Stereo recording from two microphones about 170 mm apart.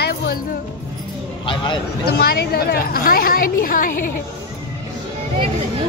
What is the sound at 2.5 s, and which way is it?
A woman's voice, 65° left (ahead or behind).